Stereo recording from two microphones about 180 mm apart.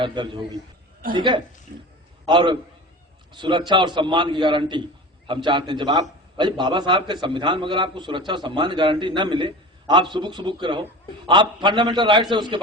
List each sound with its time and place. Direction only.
0.0 s a man's voice: 25° right (ahead or behind)
1.7 s a man's voice: 55° right (ahead or behind)
2.2 s a man's voice: 25° right (ahead or behind)